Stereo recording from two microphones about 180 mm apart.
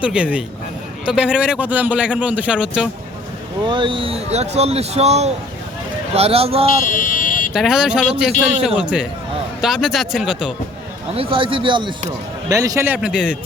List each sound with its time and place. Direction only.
0.0 s a man's voice: 5° right (ahead or behind)
3.7 s speech: 25° right (ahead or behind)
6.9 s vehicle: 45° left (ahead or behind)
7.5 s a man's voice: 5° right (ahead or behind)
11.1 s a man's voice: 30° right (ahead or behind); by 13.3 s 5° right (ahead or behind)